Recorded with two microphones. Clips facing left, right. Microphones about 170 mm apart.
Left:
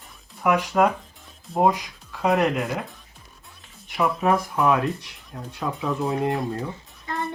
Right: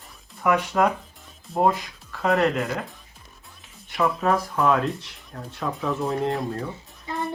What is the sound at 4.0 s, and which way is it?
Speech, centre (ahead or behind).